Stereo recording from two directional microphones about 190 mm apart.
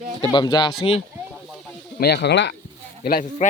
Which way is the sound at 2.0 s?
60° left (ahead or behind).